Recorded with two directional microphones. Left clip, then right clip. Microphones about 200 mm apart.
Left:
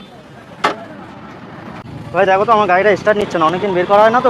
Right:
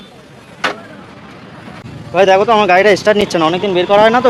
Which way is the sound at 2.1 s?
45° right (ahead or behind).